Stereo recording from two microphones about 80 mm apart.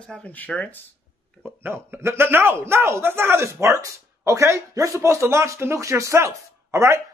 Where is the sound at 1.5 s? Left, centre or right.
Right.